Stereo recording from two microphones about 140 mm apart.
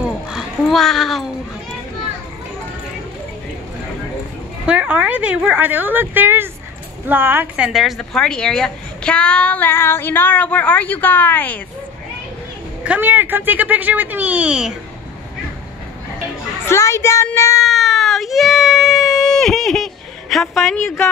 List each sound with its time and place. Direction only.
0.0 s a sound: 5° right (ahead or behind)
4.6 s a woman's voice: 10° right (ahead or behind); by 11.6 s 10° left (ahead or behind)
12.8 s a woman's voice: 10° right (ahead or behind)
16.6 s speech: 20° left (ahead or behind)
17.6 s a sound: centre (ahead or behind)
20.8 s a woman's voice: 20° left (ahead or behind)